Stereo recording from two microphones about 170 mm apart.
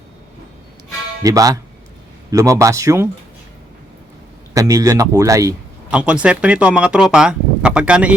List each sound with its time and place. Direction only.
1.2 s speech: 20° right (ahead or behind)
4.5 s speech: 20° right (ahead or behind)
5.9 s speech: 5° right (ahead or behind)